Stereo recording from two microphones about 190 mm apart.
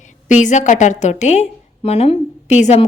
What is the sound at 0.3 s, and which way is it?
A woman's voice, 40° left (ahead or behind).